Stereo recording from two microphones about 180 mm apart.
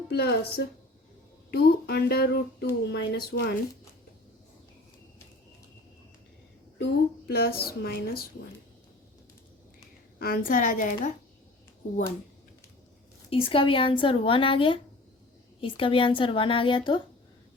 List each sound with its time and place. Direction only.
0.1 s speech: 60° left (ahead or behind)
6.7 s speech: 65° left (ahead or behind)
10.2 s a woman's voice: 55° left (ahead or behind)
13.3 s a woman's voice: 30° left (ahead or behind)